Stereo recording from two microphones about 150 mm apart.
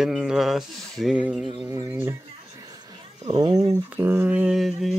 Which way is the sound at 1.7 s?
15° right (ahead or behind).